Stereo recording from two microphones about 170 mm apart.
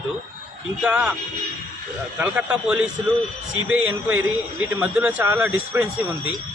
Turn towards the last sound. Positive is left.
turn(degrees=-10)  # may be behind; listen again after turning